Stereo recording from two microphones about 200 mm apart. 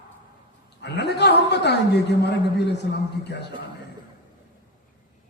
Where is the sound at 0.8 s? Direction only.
55° left (ahead or behind).